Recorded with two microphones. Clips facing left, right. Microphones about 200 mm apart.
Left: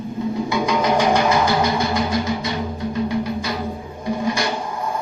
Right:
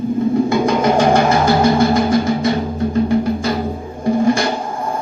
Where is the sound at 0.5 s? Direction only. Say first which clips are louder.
Right 5 dB; 50° right (ahead or behind).